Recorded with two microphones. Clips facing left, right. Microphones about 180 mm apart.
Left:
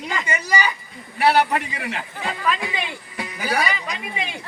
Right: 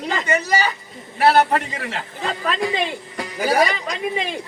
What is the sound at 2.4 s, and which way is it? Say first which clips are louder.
A woman's voice: right 3 dB; 40° right (ahead or behind).